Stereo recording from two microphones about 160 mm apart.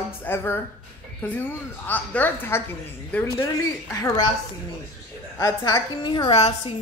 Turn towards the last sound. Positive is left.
turn(degrees=40)  # may be behind; listen again after turning